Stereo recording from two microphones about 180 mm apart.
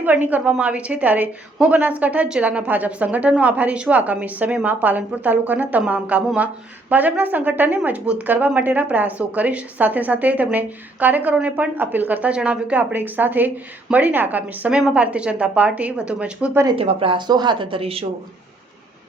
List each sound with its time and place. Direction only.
0.0 s speech: 10° right (ahead or behind)
16.6 s a woman's voice: 30° right (ahead or behind)